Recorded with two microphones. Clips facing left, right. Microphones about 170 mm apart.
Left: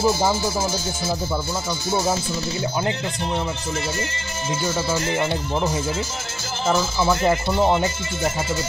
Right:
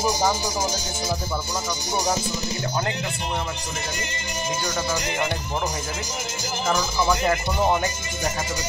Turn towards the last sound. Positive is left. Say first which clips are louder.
# left 3 dB
turn(degrees=25)  # may be behind; listen again after turning